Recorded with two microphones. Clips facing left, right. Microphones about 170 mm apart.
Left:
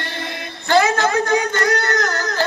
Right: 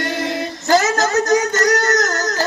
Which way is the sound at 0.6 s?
40° right (ahead or behind).